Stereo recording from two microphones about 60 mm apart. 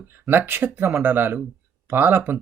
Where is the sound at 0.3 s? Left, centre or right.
Right.